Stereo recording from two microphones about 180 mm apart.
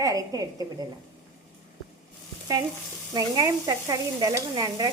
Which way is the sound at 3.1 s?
20° right (ahead or behind).